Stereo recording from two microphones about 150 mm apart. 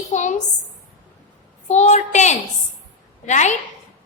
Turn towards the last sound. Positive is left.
turn(degrees=50)  # may be behind; listen again after turning